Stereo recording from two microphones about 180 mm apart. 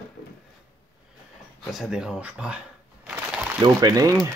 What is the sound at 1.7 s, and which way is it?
Speech, 5° right (ahead or behind).